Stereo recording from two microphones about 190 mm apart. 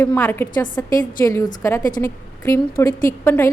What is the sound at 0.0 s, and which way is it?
A woman's voice, 10° left (ahead or behind).